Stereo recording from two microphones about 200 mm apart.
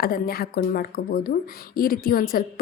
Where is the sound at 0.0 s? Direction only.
50° left (ahead or behind).